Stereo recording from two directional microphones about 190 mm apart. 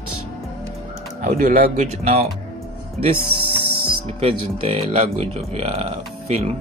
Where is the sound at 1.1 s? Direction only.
45° right (ahead or behind).